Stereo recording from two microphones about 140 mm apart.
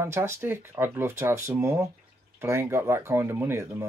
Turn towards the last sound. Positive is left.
turn(degrees=-15)  # may be behind; listen again after turning